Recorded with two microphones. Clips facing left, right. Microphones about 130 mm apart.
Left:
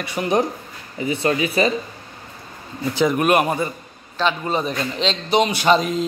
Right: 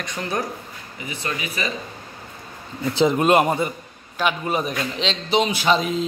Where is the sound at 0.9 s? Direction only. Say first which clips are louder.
Left 10 dB; 35° left (ahead or behind).